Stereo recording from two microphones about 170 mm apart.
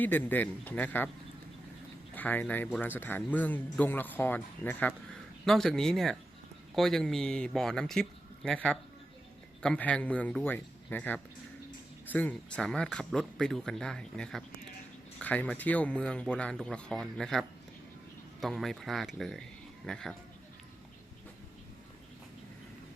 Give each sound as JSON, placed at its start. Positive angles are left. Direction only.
{"t": 0.0, "sound": "speech", "side_deg": 10}
{"t": 2.1, "sound": "speech", "side_deg": 10}